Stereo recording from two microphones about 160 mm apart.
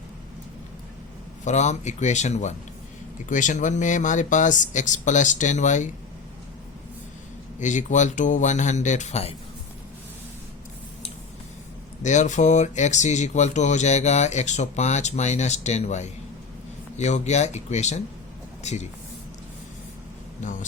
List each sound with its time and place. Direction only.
1.5 s speech: 45° left (ahead or behind)
7.6 s speech: 50° left (ahead or behind)
12.0 s speech: 50° left (ahead or behind)
20.4 s speech: 50° left (ahead or behind)